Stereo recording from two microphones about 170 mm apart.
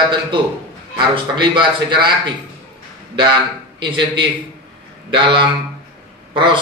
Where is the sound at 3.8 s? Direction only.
30° right (ahead or behind).